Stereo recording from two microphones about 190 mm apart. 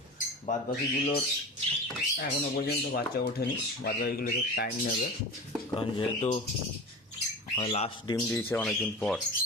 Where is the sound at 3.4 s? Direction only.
55° left (ahead or behind).